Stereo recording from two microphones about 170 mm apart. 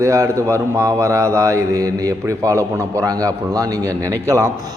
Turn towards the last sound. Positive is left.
turn(degrees=-20)  # may be behind; listen again after turning